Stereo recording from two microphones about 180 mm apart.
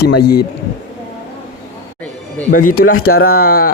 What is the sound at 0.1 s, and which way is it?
Speech, 60° left (ahead or behind).